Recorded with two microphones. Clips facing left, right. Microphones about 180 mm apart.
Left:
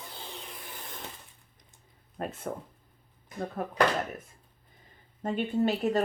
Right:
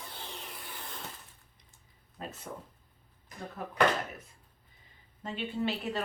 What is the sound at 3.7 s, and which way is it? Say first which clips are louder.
Speech: left 1 dB; 50° left (ahead or behind).